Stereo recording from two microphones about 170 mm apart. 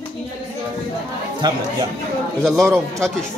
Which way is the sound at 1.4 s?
25° right (ahead or behind).